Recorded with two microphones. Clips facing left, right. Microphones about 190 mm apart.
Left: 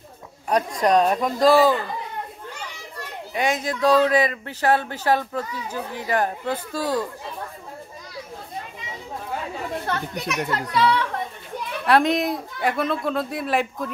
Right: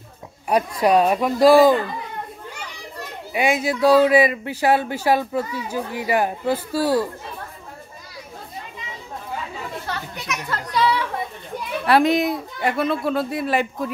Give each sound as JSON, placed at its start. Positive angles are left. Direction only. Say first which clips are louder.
{"t": 0.5, "sound": "speech", "louder": "right 2 dB", "side_deg": -10}
{"t": 3.3, "sound": "speech", "louder": "right 4 dB", "side_deg": -10}
{"t": 9.8, "sound": "children playing", "louder": "left 3 dB", "side_deg": 50}
{"t": 10.7, "sound": "a sound", "louder": "right 1 dB", "side_deg": 0}
{"t": 11.8, "sound": "speech", "louder": "right 2 dB", "side_deg": 0}